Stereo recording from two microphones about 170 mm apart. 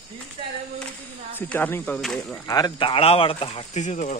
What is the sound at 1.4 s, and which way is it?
Speech, 10° left (ahead or behind).